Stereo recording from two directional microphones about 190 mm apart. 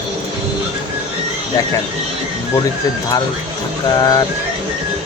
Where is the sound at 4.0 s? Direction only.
20° left (ahead or behind).